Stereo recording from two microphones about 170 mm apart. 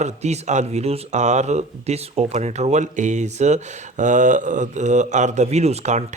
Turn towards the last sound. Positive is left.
turn(degrees=-45)  # may be behind; listen again after turning